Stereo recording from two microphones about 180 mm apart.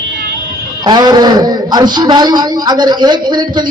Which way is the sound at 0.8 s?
25° right (ahead or behind).